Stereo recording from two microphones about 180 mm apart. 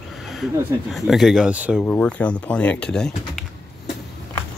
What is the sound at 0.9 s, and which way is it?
Speech, centre (ahead or behind).